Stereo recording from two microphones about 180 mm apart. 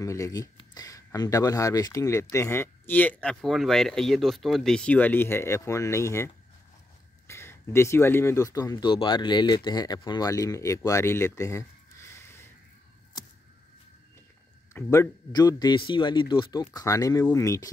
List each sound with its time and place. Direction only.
0.0 s speech: 20° left (ahead or behind)
14.7 s speech: 15° left (ahead or behind)